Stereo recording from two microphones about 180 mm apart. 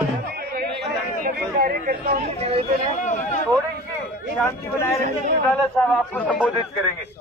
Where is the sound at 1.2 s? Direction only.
55° right (ahead or behind).